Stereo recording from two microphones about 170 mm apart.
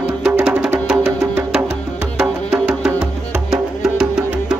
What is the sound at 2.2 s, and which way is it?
Music, 5° right (ahead or behind).